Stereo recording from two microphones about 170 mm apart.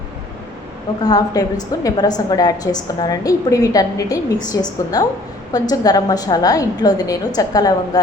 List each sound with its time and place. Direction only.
1.0 s a woman's voice: 20° left (ahead or behind)